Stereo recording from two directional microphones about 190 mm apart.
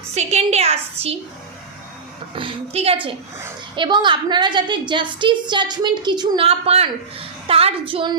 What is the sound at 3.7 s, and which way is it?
A woman's voice, 25° right (ahead or behind).